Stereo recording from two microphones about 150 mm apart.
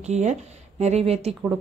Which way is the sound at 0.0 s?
50° right (ahead or behind).